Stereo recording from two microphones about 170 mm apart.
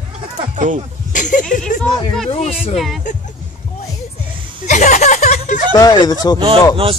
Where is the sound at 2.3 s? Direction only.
40° left (ahead or behind).